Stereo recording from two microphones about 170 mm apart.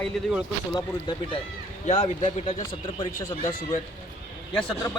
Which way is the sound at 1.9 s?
40° left (ahead or behind).